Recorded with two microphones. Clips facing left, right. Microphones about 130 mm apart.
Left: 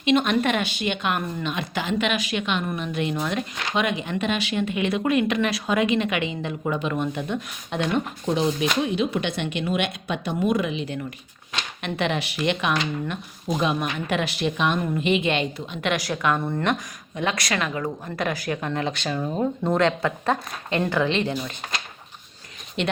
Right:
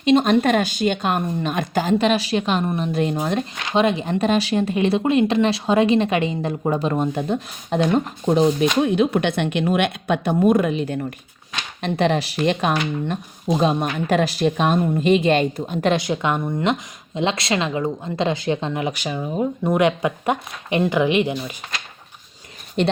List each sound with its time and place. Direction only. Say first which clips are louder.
0.0 s a woman's voice: right 5 dB; 35° right (ahead or behind)
8.8 s speech: right 6 dB; 55° right (ahead or behind)
11.8 s a woman's voice: right 6 dB; 35° right (ahead or behind)
15.9 s a woman's voice: right 3 dB; 25° right (ahead or behind)
22.8 s a woman's voice: right 5 dB; 40° right (ahead or behind)